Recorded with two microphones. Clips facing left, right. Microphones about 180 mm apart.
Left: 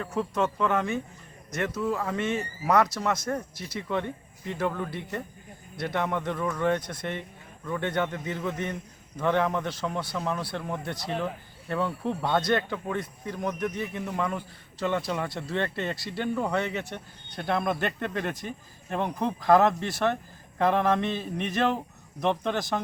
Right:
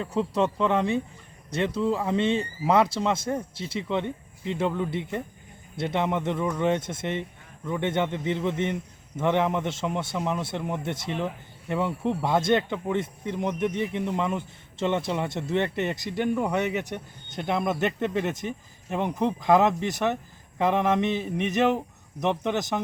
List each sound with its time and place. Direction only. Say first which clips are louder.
0.1 s speech: right 3 dB; 30° right (ahead or behind)
0.4 s speech: right 2 dB; 20° right (ahead or behind)
1.5 s speech: right 3 dB; 30° right (ahead or behind)
3.2 s a sound: right 2 dB; 15° right (ahead or behind)
3.7 s speech: right 2 dB; 20° right (ahead or behind)
20.6 s a sound: right 1 dB; 20° right (ahead or behind)